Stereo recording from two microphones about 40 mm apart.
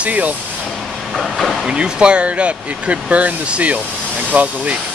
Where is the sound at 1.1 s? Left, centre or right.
Centre.